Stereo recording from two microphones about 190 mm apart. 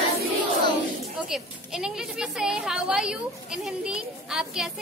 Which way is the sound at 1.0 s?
5° right (ahead or behind).